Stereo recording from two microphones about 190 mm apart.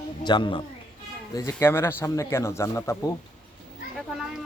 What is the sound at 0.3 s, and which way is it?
Speech, 25° left (ahead or behind).